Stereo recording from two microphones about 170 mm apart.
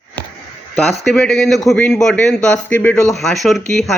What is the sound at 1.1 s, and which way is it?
A man's voice, centre (ahead or behind).